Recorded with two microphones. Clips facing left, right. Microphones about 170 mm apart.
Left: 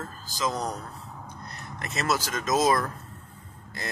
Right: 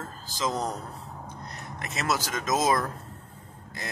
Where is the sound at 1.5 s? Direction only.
15° right (ahead or behind).